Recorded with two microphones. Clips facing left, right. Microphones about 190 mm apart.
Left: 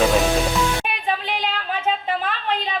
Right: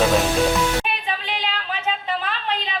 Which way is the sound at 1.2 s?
50° left (ahead or behind).